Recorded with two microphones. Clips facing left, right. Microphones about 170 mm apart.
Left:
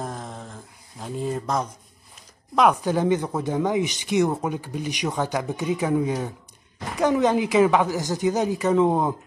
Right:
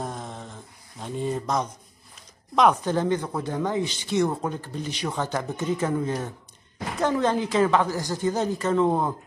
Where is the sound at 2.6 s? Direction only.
5° left (ahead or behind).